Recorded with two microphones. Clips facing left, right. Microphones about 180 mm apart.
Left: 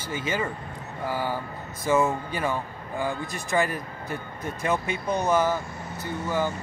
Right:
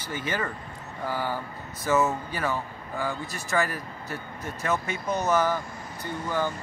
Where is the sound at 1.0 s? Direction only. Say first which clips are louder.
Left 1 dB; 15° left (ahead or behind).